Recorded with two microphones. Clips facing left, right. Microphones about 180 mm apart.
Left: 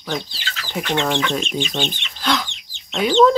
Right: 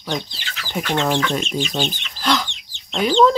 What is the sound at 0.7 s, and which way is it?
Speech, 5° right (ahead or behind).